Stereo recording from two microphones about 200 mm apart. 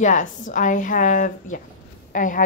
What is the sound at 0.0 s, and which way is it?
A woman's voice, 40° left (ahead or behind).